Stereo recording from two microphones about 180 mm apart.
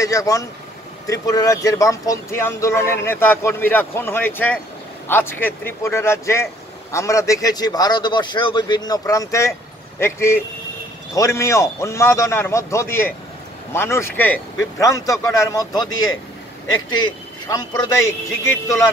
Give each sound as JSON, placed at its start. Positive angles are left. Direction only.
{"t": 0.0, "sound": "speech", "side_deg": 15}
{"t": 17.5, "sound": "speech", "side_deg": 20}